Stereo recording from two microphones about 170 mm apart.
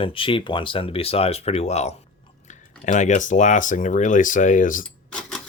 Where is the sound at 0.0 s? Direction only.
30° left (ahead or behind); by 4.9 s 50° left (ahead or behind).